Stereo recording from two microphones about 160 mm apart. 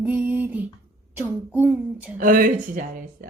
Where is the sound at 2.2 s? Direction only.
60° right (ahead or behind).